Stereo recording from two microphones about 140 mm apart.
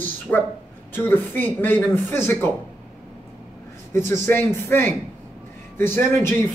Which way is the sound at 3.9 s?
15° left (ahead or behind).